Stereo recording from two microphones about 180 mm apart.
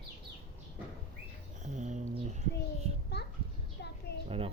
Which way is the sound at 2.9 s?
35° right (ahead or behind).